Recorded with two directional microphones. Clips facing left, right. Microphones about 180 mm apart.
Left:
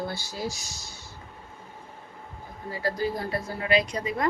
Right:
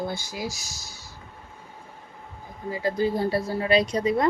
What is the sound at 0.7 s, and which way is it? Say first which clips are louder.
Speech: even; 40° right (ahead or behind).